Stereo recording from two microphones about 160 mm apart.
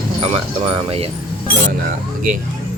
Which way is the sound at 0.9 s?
40° right (ahead or behind).